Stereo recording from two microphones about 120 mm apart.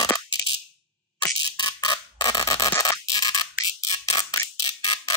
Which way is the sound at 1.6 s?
35° left (ahead or behind).